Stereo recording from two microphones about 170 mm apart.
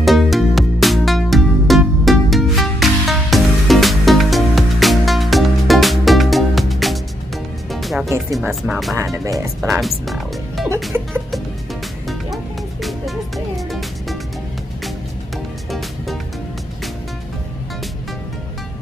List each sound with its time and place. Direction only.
0.0 s music: centre (ahead or behind)
8.6 s speech: centre (ahead or behind)
8.9 s speech: 20° right (ahead or behind)
9.8 s music: centre (ahead or behind)
12.8 s music: centre (ahead or behind)